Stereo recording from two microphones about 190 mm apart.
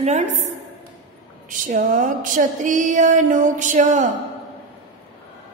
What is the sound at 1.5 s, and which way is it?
A woman's voice, 45° right (ahead or behind).